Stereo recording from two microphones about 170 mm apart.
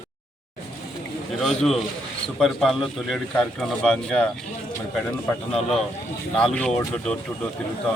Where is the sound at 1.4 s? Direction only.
5° left (ahead or behind).